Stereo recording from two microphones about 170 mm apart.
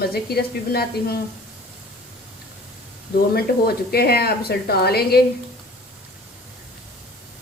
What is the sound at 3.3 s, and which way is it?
Speech, 65° left (ahead or behind).